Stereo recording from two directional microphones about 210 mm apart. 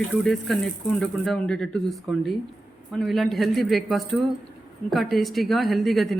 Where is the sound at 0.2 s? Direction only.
Centre (ahead or behind).